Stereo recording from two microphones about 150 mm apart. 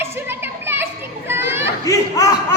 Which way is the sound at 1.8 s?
20° left (ahead or behind).